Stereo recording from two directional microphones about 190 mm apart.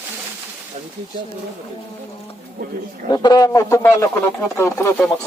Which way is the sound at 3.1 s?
20° left (ahead or behind).